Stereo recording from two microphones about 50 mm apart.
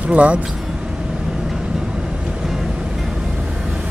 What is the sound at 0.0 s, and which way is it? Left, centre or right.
Speech, right.